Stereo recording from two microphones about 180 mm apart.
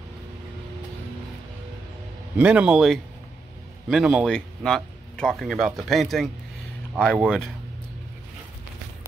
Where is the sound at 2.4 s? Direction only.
5° right (ahead or behind).